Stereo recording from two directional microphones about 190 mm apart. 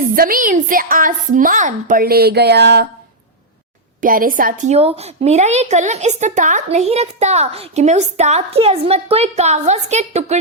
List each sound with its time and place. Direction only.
0.2 s a woman's voice: 45° right (ahead or behind)
4.0 s a woman's voice: 45° right (ahead or behind)